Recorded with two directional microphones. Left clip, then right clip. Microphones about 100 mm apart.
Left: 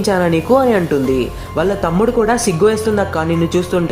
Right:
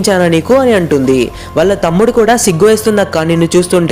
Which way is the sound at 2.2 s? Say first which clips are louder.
Right 5 dB; 45° right (ahead or behind).